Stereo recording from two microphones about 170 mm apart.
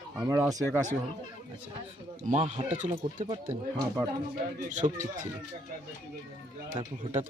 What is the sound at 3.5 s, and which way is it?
Speech, 20° right (ahead or behind).